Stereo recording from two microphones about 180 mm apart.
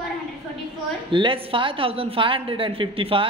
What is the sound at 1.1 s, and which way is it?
A woman's voice, 30° right (ahead or behind).